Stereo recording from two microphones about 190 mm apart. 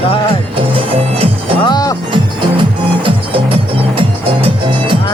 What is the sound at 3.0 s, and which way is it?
Music, 30° right (ahead or behind).